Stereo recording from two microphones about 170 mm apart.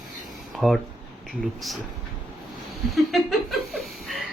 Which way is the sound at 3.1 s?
Centre (ahead or behind).